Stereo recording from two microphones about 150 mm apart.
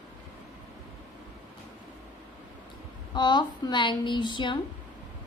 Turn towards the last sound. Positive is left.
turn(degrees=30)  # may be behind; listen again after turning